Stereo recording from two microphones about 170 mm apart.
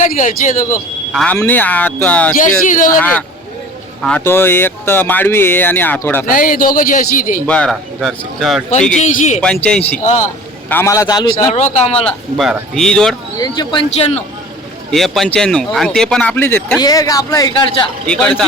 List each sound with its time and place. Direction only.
0.0 s speech: 45° left (ahead or behind)
1.1 s speech: 5° left (ahead or behind)
2.4 s speech: 50° left (ahead or behind)
3.0 s speech: 10° left (ahead or behind)
6.2 s a man's voice: 55° left (ahead or behind)
7.4 s speech: 5° left (ahead or behind)
9.0 s speech: 45° left (ahead or behind)
10.7 s speech: 15° left (ahead or behind)
11.5 s speech: 40° left (ahead or behind)
11.9 s speech: centre (ahead or behind)
13.4 s a man's voice: 25° left (ahead or behind)
14.8 s a man's voice: centre (ahead or behind); by 17.7 s 20° left (ahead or behind)
18.1 s speech: 5° left (ahead or behind)